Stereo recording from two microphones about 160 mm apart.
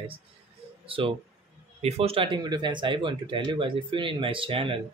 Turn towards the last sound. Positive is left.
turn(degrees=-35)  # may be behind; listen again after turning